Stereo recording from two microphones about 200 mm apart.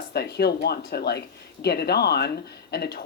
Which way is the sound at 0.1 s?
55° left (ahead or behind).